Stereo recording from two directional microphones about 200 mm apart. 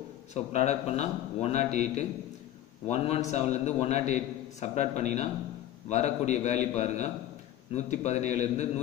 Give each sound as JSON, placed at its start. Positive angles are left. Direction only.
{"t": 0.3, "sound": "a man's voice", "side_deg": 35}